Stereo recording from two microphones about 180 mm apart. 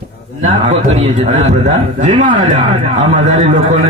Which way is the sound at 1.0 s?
40° right (ahead or behind).